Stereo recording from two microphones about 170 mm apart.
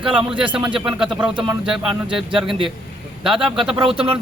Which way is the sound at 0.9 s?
5° right (ahead or behind).